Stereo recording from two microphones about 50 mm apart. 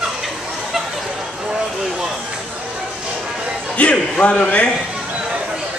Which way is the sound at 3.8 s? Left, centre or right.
Left.